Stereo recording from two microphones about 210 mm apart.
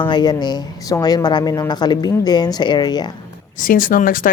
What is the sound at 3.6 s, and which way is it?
Speech, 40° left (ahead or behind).